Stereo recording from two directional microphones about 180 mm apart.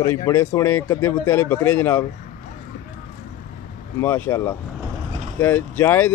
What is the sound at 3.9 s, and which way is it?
Speech, 10° left (ahead or behind).